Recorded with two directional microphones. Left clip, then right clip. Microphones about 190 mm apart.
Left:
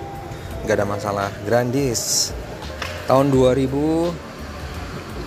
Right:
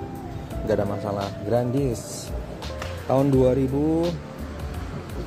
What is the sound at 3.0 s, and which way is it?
Speech, centre (ahead or behind).